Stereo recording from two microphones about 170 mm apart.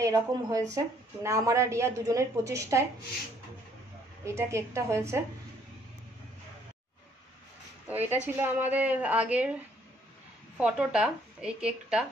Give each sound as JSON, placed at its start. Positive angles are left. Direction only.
{"t": 0.0, "sound": "a woman's voice", "side_deg": -20}
{"t": 4.2, "sound": "a woman's voice", "side_deg": -15}
{"t": 7.9, "sound": "a woman's voice", "side_deg": -10}
{"t": 10.6, "sound": "speech", "side_deg": -5}